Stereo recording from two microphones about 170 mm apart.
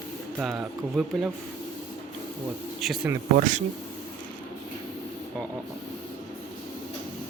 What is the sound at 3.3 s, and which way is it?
Speech, 50° right (ahead or behind).